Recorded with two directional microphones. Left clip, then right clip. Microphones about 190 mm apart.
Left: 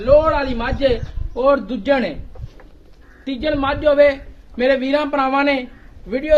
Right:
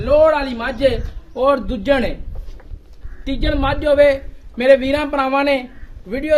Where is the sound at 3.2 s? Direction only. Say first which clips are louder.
Even; 55° right (ahead or behind).